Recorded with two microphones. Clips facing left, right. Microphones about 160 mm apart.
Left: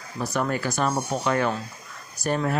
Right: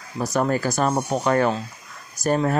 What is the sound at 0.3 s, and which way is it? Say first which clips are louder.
Speech: right 4 dB; 40° right (ahead or behind).